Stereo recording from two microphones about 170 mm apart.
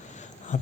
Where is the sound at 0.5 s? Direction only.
45° left (ahead or behind).